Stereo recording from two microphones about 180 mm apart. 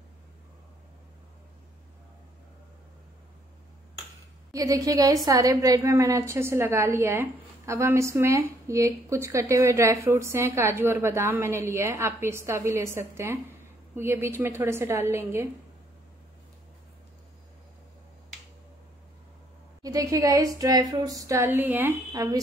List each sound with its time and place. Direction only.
4.5 s a woman's voice: 20° right (ahead or behind)
19.8 s a woman's voice: 20° right (ahead or behind)